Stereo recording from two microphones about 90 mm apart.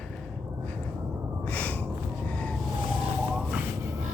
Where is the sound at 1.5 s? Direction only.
15° left (ahead or behind).